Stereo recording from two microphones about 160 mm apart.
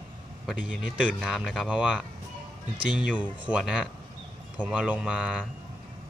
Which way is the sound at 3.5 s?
5° right (ahead or behind).